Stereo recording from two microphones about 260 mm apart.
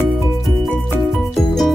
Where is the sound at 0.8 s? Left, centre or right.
Centre.